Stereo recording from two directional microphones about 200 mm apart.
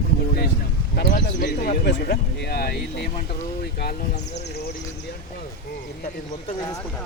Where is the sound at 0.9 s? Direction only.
50° left (ahead or behind).